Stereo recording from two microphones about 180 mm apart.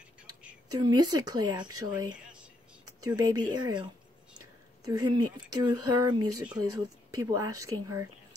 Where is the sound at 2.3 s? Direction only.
5° right (ahead or behind).